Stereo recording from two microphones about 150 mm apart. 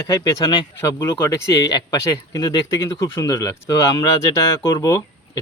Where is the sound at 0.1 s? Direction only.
25° left (ahead or behind).